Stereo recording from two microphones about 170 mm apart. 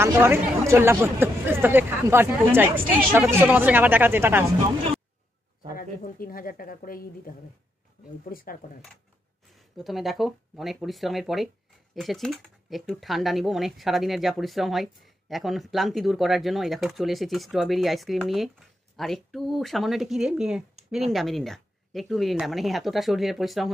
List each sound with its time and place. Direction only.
0.0 s speech: 15° right (ahead or behind)
5.8 s a woman's voice: 60° left (ahead or behind)
9.8 s speech: centre (ahead or behind)